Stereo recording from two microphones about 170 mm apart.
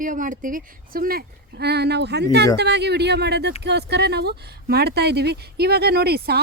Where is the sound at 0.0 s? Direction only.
50° right (ahead or behind).